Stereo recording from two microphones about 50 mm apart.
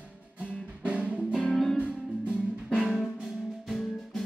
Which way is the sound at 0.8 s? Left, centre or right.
Right.